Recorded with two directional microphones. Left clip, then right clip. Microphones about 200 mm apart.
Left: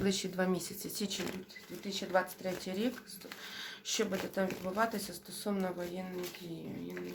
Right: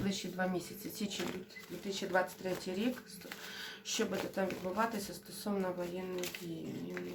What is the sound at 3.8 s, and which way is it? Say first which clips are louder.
Speech: left 1 dB; 35° left (ahead or behind).